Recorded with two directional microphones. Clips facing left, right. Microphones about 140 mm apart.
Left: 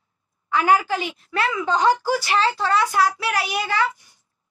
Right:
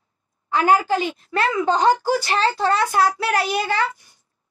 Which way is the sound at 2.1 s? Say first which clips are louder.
Right 1 dB; 45° right (ahead or behind).